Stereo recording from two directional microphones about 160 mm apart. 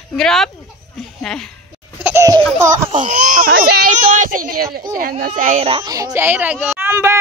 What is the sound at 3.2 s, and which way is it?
Speech, 55° right (ahead or behind).